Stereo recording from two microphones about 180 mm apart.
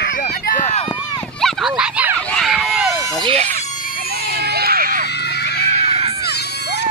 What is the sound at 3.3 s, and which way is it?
Speech, 35° right (ahead or behind).